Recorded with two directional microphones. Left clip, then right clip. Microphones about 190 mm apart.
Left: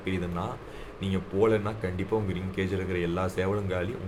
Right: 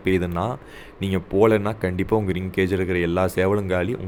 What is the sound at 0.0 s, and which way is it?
Speech, 50° right (ahead or behind).